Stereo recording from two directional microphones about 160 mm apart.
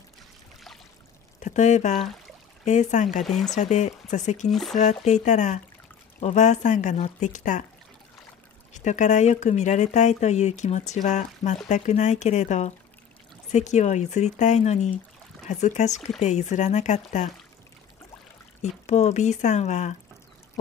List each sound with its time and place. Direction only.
1.4 s speech: 50° left (ahead or behind)
3.3 s speech: centre (ahead or behind)
3.5 s speech: 45° left (ahead or behind)
4.5 s speech: centre (ahead or behind)
4.7 s speech: 45° left (ahead or behind)
8.7 s speech: 50° left (ahead or behind)
18.6 s speech: 45° left (ahead or behind)